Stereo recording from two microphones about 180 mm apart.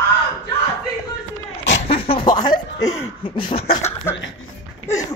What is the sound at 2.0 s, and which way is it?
Chuckle, 25° left (ahead or behind).